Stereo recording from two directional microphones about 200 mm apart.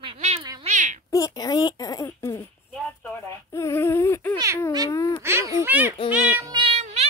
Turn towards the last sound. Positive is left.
turn(degrees=-30)  # may be behind; listen again after turning